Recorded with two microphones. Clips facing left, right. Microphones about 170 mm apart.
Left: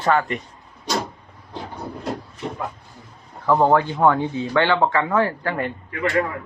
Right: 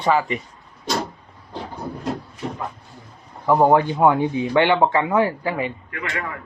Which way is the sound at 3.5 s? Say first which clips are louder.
Right 1 dB; 15° right (ahead or behind).